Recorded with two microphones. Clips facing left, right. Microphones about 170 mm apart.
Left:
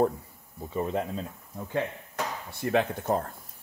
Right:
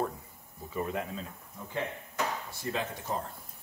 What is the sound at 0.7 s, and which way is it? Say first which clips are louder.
Speech: left 5 dB; 30° left (ahead or behind).